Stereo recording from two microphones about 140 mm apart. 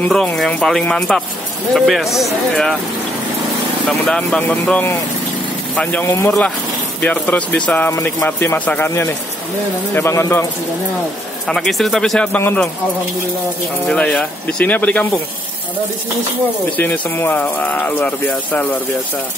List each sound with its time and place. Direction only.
0.0 s speech: 5° left (ahead or behind)
4.0 s a man's voice: 5° left (ahead or behind); by 10.5 s 20° left (ahead or behind)
11.4 s speech: 5° left (ahead or behind)
13.8 s speech: 5° left (ahead or behind)
16.7 s speech: 15° left (ahead or behind)